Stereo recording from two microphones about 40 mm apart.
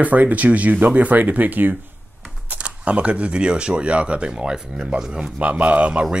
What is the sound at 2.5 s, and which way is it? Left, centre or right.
Speech, right.